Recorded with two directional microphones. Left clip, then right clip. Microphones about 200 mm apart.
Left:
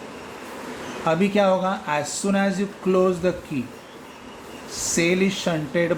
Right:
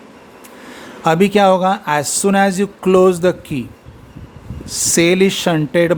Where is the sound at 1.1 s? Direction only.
60° right (ahead or behind).